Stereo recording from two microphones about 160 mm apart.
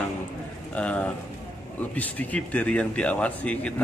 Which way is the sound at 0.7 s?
5° left (ahead or behind).